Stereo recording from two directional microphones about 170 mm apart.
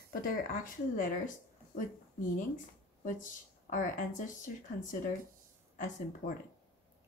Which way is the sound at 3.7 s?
50° left (ahead or behind).